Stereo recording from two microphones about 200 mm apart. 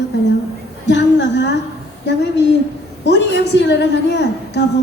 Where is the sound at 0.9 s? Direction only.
60° left (ahead or behind).